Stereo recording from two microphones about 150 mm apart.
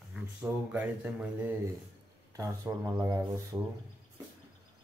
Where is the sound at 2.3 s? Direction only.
20° right (ahead or behind).